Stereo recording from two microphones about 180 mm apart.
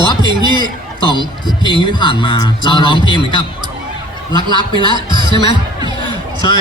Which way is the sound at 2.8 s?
25° right (ahead or behind).